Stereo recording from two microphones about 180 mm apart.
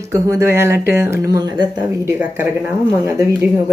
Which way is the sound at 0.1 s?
15° right (ahead or behind).